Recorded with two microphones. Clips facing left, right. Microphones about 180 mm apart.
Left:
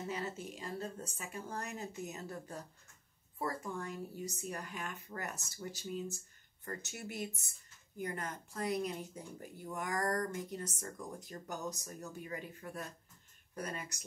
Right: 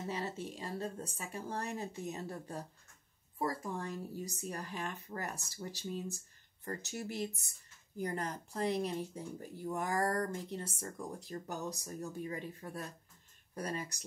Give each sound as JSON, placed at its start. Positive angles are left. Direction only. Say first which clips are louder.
{"t": 0.1, "sound": "speech", "louder": "right 1 dB", "side_deg": -35}